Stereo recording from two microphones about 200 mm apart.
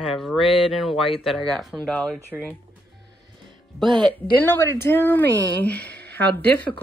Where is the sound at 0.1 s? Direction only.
Centre (ahead or behind).